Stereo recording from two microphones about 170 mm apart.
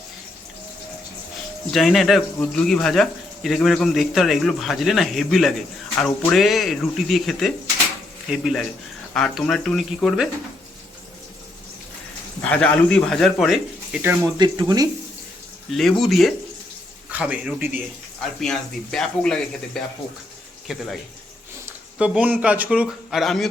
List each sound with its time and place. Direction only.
1.7 s speech: centre (ahead or behind)
12.4 s speech: 5° left (ahead or behind)
14.3 s speech: 25° right (ahead or behind)
15.7 s speech: centre (ahead or behind)
18.2 s speech: 5° left (ahead or behind)